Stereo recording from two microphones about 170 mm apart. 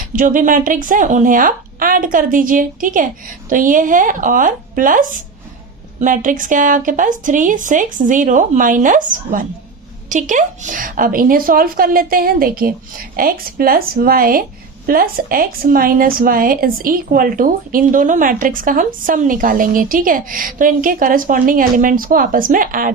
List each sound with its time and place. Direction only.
0.2 s a woman's voice: 50° right (ahead or behind)